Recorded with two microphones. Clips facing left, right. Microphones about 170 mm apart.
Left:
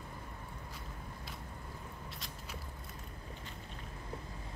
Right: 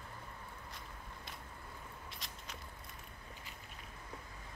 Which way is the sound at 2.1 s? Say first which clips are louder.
Left 3 dB; centre (ahead or behind).